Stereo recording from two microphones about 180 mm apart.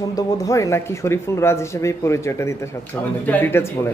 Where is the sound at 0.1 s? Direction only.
20° left (ahead or behind).